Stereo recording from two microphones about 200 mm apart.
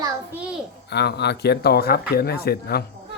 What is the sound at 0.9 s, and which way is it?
Speech, 55° left (ahead or behind).